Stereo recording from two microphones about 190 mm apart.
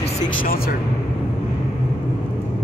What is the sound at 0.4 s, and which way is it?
Speech, 50° left (ahead or behind).